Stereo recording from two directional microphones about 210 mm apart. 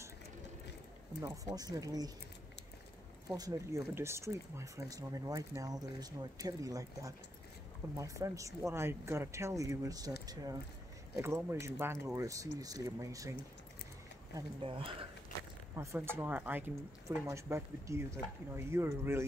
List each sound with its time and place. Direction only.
1.2 s speech: 15° right (ahead or behind)
3.3 s speech: 15° right (ahead or behind)
14.3 s speech: 25° right (ahead or behind)
15.7 s speech: 15° right (ahead or behind)